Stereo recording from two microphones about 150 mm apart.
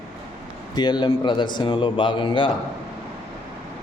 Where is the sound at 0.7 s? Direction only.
30° left (ahead or behind).